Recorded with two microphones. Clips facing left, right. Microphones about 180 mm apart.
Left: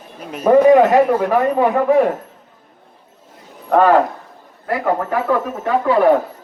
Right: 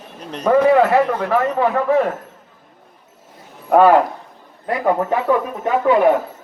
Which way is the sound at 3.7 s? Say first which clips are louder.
Right 1 dB; 10° right (ahead or behind).